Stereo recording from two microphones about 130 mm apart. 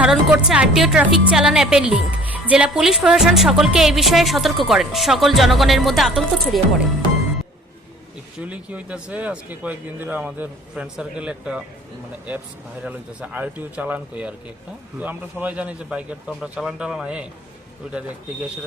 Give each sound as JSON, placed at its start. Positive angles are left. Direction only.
{"t": 0.0, "sound": "a woman's voice", "side_deg": -10}
{"t": 8.4, "sound": "speech", "side_deg": -10}
{"t": 12.8, "sound": "speech", "side_deg": -10}